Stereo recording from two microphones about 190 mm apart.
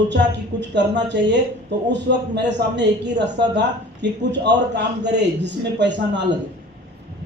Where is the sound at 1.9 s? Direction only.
65° right (ahead or behind).